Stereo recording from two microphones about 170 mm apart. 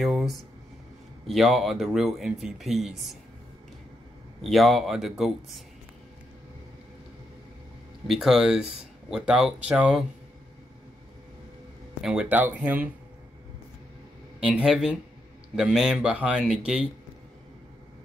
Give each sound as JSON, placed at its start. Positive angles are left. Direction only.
{"t": 0.0, "sound": "a sound", "side_deg": 0}
{"t": 1.2, "sound": "speech", "side_deg": 0}
{"t": 4.4, "sound": "speech", "side_deg": 0}
{"t": 8.1, "sound": "speech", "side_deg": 0}
{"t": 12.0, "sound": "speech", "side_deg": -5}
{"t": 14.4, "sound": "speech", "side_deg": -5}